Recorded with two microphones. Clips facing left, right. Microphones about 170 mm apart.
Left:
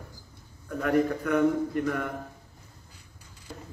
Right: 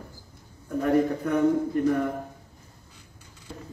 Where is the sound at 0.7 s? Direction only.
30° right (ahead or behind).